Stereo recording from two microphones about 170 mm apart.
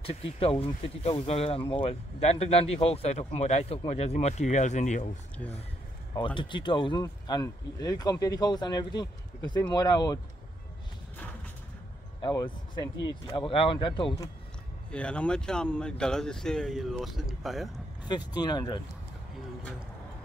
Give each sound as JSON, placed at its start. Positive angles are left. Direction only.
{"t": 0.0, "sound": "speech", "side_deg": 35}
{"t": 6.1, "sound": "speech", "side_deg": 30}
{"t": 12.2, "sound": "speech", "side_deg": 25}
{"t": 14.9, "sound": "speech", "side_deg": 5}
{"t": 18.0, "sound": "speech", "side_deg": 25}